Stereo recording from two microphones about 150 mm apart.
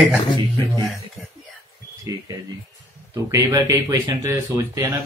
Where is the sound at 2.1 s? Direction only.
25° right (ahead or behind).